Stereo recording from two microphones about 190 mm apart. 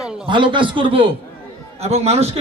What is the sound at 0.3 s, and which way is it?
A man's voice, 25° right (ahead or behind).